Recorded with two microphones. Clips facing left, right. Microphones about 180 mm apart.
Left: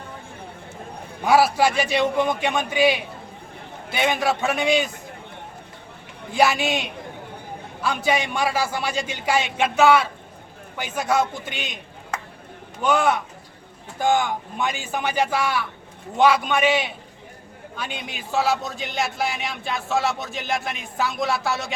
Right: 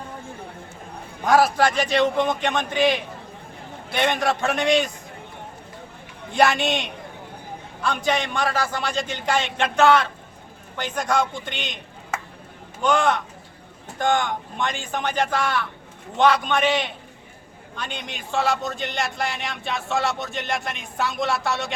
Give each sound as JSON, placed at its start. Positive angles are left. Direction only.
{"t": 1.2, "sound": "a man's voice", "side_deg": 10}
{"t": 6.3, "sound": "a man's voice", "side_deg": 5}
{"t": 12.1, "sound": "a sound", "side_deg": -5}
{"t": 12.8, "sound": "a man's voice", "side_deg": 5}